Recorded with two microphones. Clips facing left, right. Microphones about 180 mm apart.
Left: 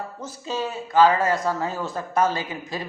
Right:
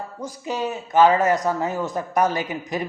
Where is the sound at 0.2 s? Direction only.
15° right (ahead or behind).